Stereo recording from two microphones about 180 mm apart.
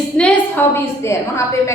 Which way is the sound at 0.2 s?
10° left (ahead or behind).